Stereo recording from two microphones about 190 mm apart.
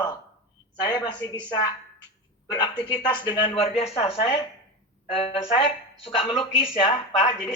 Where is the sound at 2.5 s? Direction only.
20° left (ahead or behind).